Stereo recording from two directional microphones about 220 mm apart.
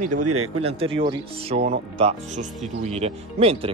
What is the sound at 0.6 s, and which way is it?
Speech, 25° right (ahead or behind).